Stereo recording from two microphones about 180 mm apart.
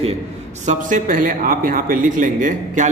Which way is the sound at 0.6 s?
45° right (ahead or behind).